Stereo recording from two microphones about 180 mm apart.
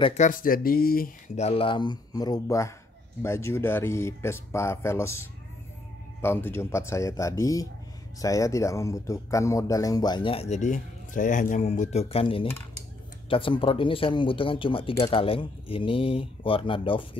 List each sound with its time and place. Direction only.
0.2 s speech: 50° left (ahead or behind)
1.4 s speech: 30° left (ahead or behind)